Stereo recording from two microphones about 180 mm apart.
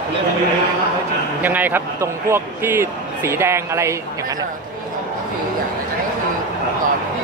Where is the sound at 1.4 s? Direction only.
10° right (ahead or behind).